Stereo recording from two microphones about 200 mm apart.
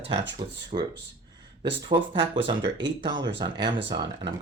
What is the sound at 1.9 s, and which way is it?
Speech, 25° right (ahead or behind).